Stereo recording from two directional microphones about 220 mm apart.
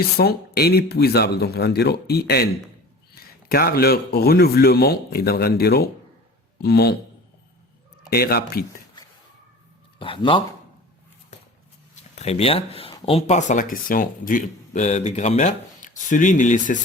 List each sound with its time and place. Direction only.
0.2 s speech: 45° left (ahead or behind)
8.1 s speech: 45° left (ahead or behind)
10.0 s speech: 25° left (ahead or behind)
12.1 s speech: 30° left (ahead or behind)